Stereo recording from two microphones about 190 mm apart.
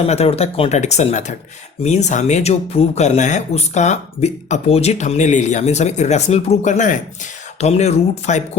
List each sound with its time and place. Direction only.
0.1 s speech: 35° left (ahead or behind)